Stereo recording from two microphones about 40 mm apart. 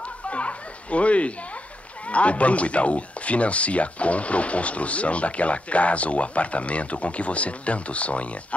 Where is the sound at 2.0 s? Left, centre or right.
Left.